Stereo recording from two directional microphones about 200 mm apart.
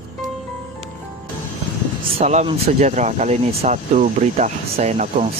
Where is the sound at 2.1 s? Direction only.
30° right (ahead or behind).